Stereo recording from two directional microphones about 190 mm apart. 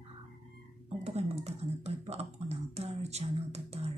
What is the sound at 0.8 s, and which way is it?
Computer keyboard, 35° right (ahead or behind).